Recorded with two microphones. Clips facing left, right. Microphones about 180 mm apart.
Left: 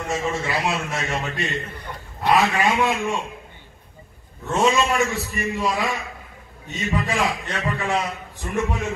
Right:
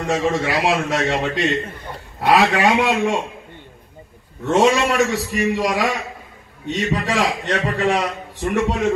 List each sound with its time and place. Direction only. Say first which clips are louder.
0.0 s a man's voice: right 5 dB; 80° right
4.5 s a man's voice: right 4 dB; 75° right (ahead or behind)